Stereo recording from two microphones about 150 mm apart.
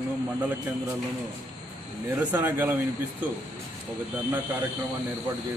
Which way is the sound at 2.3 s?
15° right (ahead or behind).